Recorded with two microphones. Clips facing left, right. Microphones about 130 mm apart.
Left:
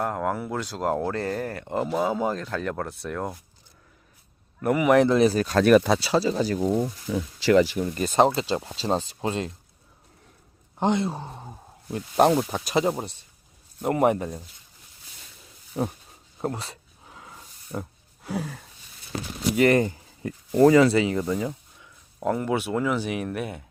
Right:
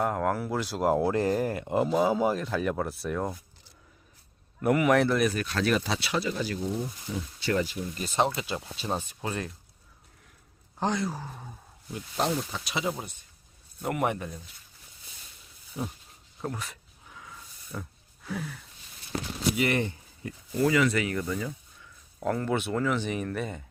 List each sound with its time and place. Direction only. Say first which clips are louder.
0.0 s speech: even; centre (ahead or behind)
4.6 s speech: left 4 dB; 5° left (ahead or behind); by 6.0 s 55° left (ahead or behind)
6.0 s speech: left 7 dB; 35° left (ahead or behind)
6.6 s speech: left 8 dB; 90° left
7.8 s speech: left 7 dB; 55° left (ahead or behind)
8.4 s speech: left 7 dB; 35° left (ahead or behind)
10.8 s speech: left 5 dB; 20° left (ahead or behind)
11.9 s speech: left 9 dB; 45° left (ahead or behind)
12.2 s speech: left 9 dB; 60° left (ahead or behind); by 12.9 s 45° left (ahead or behind)
13.8 s speech: left 7 dB; 30° left (ahead or behind)
15.8 s a sound: left 7 dB; 55° left (ahead or behind)
16.4 s a sound: left 5 dB; 35° left (ahead or behind)
17.7 s speech: left 6 dB; 40° left (ahead or behind); by 21.8 s 25° left (ahead or behind)
22.2 s speech: left 3 dB; 15° left (ahead or behind)